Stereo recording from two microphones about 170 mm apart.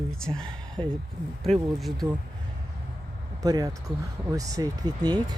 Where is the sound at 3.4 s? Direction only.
20° right (ahead or behind).